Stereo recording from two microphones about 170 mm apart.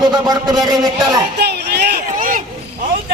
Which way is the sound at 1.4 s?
75° right (ahead or behind).